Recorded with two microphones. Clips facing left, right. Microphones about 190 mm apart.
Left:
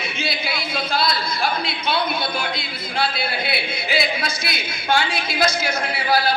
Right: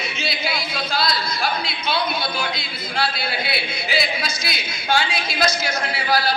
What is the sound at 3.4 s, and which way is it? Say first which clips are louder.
A woman's voice: left 1 dB; 55° left (ahead or behind).